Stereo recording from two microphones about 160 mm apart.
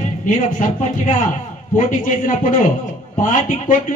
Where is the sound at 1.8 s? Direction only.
55° left (ahead or behind).